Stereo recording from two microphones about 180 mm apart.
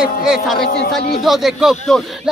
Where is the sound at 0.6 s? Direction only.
60° left (ahead or behind).